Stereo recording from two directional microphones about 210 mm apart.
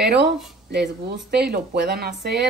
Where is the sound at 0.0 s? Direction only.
55° right (ahead or behind).